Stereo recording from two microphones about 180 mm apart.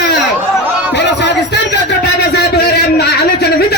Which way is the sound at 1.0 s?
70° left (ahead or behind).